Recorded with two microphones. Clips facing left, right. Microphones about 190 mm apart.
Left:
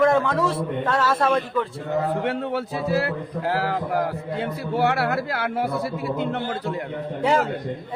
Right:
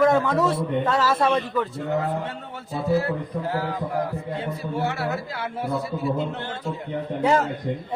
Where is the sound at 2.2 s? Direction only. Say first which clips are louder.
Left 10 dB; 70° left (ahead or behind).